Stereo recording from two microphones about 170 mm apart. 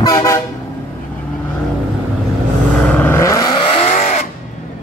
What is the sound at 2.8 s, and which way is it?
Vehicle, 10° left (ahead or behind).